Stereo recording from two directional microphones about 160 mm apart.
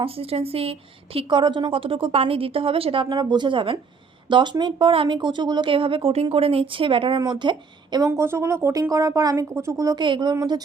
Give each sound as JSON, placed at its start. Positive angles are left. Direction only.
{"t": 0.0, "sound": "a woman's voice", "side_deg": -35}